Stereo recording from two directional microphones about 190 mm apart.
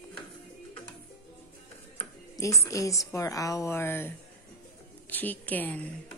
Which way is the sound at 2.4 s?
15° left (ahead or behind).